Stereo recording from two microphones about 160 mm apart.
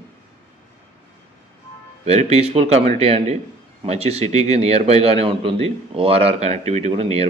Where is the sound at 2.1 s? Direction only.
45° right (ahead or behind).